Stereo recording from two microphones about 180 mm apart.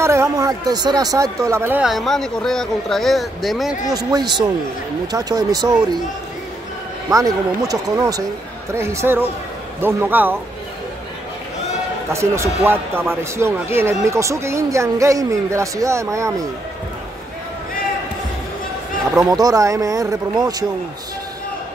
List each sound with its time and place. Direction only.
0.0 s speech: 15° right (ahead or behind); by 3.7 s centre (ahead or behind)
3.9 s a man's voice: 20° right (ahead or behind)
7.1 s a man's voice: 20° right (ahead or behind)
12.1 s speech: 15° right (ahead or behind)
19.2 s a man's voice: 20° right (ahead or behind)